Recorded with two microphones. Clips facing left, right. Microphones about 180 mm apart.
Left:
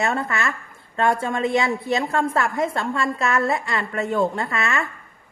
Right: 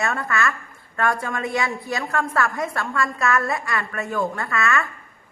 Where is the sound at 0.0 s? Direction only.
25° left (ahead or behind).